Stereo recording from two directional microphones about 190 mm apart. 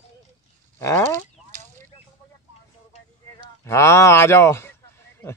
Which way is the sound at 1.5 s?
40° right (ahead or behind).